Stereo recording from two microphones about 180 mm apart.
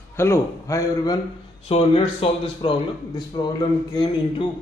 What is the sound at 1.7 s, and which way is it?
A man's voice, 30° left (ahead or behind).